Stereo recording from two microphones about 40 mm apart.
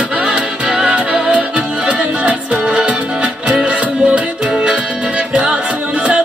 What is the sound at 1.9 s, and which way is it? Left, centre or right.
Music, right.